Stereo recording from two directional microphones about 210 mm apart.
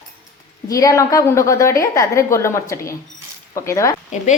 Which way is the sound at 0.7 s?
15° left (ahead or behind).